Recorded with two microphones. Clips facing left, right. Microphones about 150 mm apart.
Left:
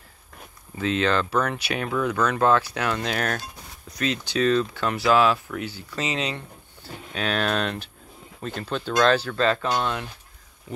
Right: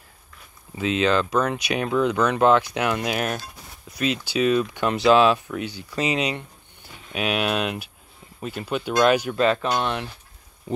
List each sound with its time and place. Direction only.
0.7 s speech: 15° right (ahead or behind)